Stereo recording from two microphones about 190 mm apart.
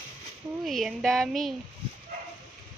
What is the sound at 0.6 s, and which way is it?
Speech, centre (ahead or behind).